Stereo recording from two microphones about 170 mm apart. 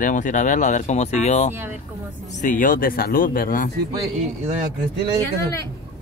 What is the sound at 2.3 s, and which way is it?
A man's voice, 50° left (ahead or behind).